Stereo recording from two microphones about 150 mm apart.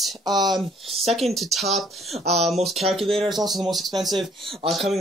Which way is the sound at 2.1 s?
45° right (ahead or behind).